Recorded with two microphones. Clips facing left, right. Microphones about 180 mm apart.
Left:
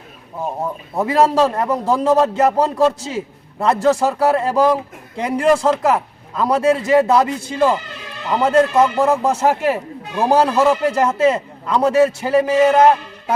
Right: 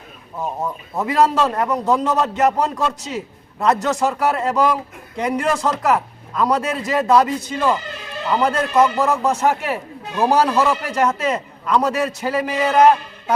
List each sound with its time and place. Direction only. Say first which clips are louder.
0.9 s a man's voice: left 2 dB; 30° left (ahead or behind)